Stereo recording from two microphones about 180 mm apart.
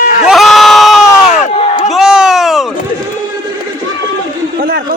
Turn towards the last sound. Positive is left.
turn(degrees=-55)  # may be behind; listen again after turning